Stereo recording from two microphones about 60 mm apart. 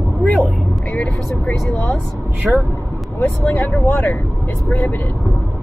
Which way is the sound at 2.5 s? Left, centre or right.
Centre.